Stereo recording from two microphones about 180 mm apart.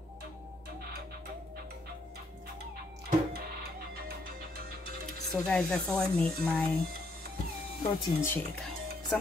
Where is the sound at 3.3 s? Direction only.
60° right (ahead or behind).